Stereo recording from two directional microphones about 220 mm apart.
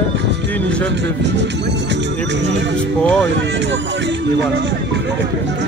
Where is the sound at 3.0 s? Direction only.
5° left (ahead or behind).